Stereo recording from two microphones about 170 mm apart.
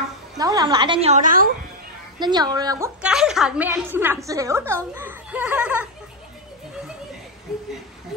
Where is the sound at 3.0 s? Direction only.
5° right (ahead or behind).